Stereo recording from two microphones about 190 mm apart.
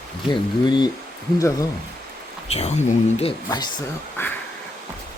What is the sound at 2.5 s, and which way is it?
Speech, 35° left (ahead or behind).